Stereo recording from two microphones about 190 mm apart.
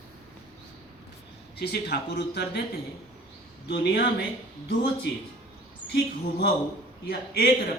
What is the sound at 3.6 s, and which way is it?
Speech, 65° left (ahead or behind).